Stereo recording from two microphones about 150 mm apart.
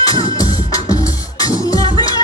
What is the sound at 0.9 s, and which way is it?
Music, 25° left (ahead or behind).